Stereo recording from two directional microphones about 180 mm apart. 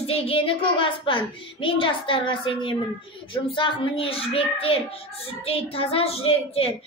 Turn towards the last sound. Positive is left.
turn(degrees=35)  # may be behind; listen again after turning